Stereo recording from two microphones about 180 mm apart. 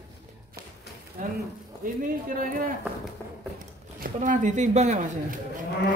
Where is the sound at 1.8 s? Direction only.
50° right (ahead or behind).